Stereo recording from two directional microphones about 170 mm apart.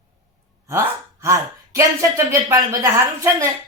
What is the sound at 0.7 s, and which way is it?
Speech, 15° right (ahead or behind).